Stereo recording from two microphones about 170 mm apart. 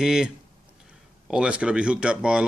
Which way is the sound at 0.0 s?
5° right (ahead or behind).